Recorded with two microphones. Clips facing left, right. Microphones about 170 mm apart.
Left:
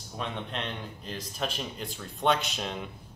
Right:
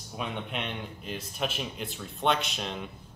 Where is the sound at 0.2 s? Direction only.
5° right (ahead or behind).